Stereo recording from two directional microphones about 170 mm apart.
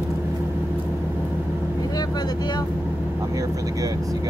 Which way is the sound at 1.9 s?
25° left (ahead or behind).